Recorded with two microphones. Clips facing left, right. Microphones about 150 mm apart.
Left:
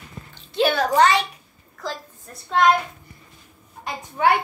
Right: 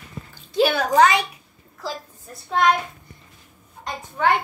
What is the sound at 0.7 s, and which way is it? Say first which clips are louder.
A child's voice: even; 10° right (ahead or behind).